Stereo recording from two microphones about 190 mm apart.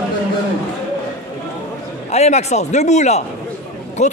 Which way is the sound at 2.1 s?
35° left (ahead or behind).